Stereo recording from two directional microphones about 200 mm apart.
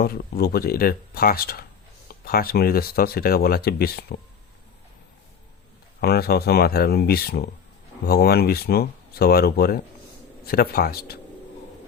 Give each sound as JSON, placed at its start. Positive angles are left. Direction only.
{"t": 0.0, "sound": "speech", "side_deg": 50}
{"t": 6.0, "sound": "speech", "side_deg": 50}